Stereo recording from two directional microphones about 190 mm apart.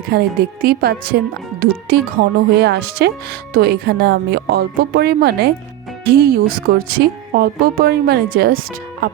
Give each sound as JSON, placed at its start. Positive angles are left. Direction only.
{"t": 0.1, "sound": "speech", "side_deg": -55}